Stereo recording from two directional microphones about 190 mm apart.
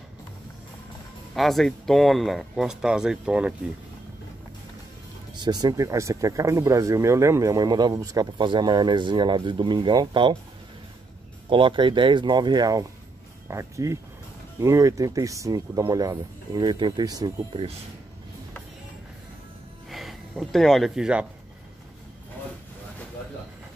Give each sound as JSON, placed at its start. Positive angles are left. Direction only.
{"t": 1.3, "sound": "speech", "side_deg": 0}
{"t": 5.3, "sound": "speech", "side_deg": -20}
{"t": 11.4, "sound": "speech", "side_deg": -25}
{"t": 19.9, "sound": "speech", "side_deg": 0}